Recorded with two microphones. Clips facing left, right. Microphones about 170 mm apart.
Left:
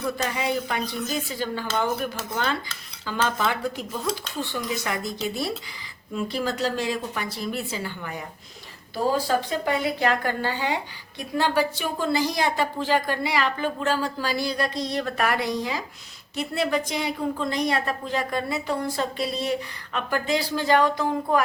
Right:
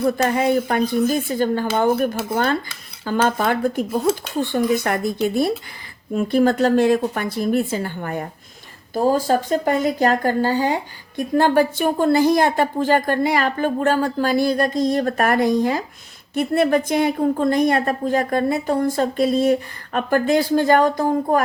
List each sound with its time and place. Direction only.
0.0 s a woman's voice: 50° right (ahead or behind)